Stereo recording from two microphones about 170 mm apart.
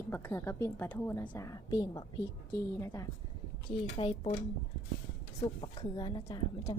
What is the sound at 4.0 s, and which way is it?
Speech, 35° left (ahead or behind).